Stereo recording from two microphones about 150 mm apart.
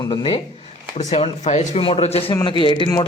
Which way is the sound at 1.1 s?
45° left (ahead or behind).